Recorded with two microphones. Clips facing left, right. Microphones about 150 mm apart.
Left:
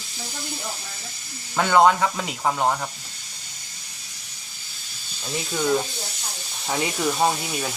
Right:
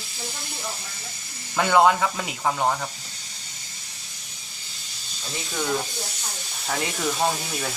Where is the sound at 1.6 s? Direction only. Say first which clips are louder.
Left 1 dB; centre (ahead or behind).